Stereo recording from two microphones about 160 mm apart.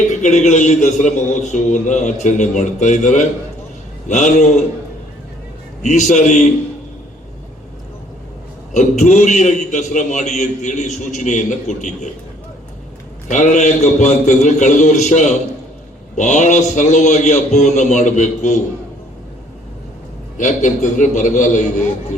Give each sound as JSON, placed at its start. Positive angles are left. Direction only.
{"t": 0.1, "sound": "a man's voice", "side_deg": 45}
{"t": 5.8, "sound": "a man's voice", "side_deg": 45}
{"t": 8.7, "sound": "a man's voice", "side_deg": 50}
{"t": 13.2, "sound": "a man's voice", "side_deg": 50}
{"t": 20.4, "sound": "a man's voice", "side_deg": 50}